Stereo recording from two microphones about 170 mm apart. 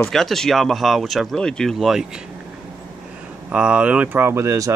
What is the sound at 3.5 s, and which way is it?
Speech, 5° right (ahead or behind).